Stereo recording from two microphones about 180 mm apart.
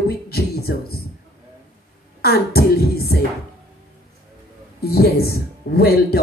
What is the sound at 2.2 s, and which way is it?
Speech, 60° left (ahead or behind).